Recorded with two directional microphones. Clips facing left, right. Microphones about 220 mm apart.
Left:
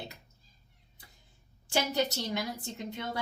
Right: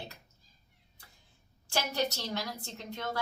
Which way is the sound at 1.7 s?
15° left (ahead or behind).